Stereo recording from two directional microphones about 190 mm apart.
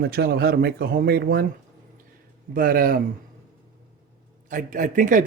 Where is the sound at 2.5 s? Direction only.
50° right (ahead or behind).